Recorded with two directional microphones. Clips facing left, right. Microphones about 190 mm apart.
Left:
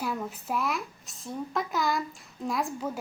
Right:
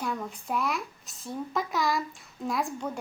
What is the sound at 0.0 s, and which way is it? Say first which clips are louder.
A woman's voice: left 1 dB; 5° left (ahead or behind).